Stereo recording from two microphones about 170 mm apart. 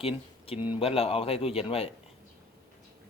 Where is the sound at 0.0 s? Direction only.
35° left (ahead or behind).